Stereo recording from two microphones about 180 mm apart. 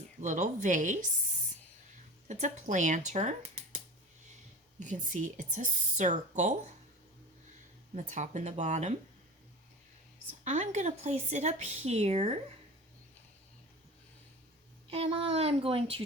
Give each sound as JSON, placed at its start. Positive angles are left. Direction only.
{"t": 0.2, "sound": "speech", "side_deg": -45}
{"t": 2.2, "sound": "speech", "side_deg": -45}
{"t": 4.8, "sound": "speech", "side_deg": -45}
{"t": 7.9, "sound": "speech", "side_deg": -40}
{"t": 10.4, "sound": "speech", "side_deg": -40}
{"t": 14.8, "sound": "speech", "side_deg": -35}